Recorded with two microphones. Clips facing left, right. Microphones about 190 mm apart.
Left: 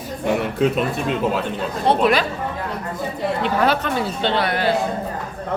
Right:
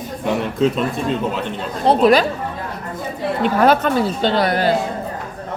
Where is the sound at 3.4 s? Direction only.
45° right (ahead or behind).